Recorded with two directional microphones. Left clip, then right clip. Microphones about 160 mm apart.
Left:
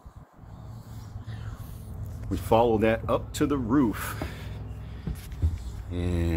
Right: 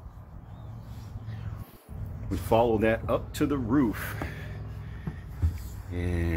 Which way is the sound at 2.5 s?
15° left (ahead or behind).